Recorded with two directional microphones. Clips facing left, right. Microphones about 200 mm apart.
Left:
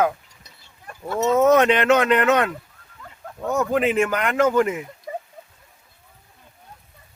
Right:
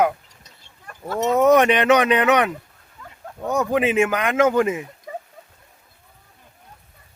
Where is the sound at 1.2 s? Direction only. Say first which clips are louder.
Right 1 dB; 15° right (ahead or behind).